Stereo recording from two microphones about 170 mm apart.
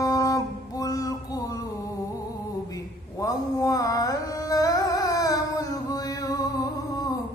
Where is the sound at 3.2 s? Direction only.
20° left (ahead or behind).